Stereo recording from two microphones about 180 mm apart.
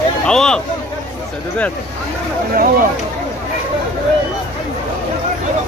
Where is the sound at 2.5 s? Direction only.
50° right (ahead or behind).